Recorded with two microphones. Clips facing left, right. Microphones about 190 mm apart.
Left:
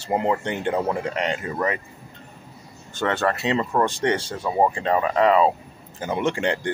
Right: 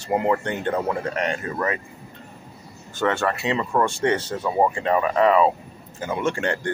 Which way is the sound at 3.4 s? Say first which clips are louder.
Left 2 dB; 25° left (ahead or behind).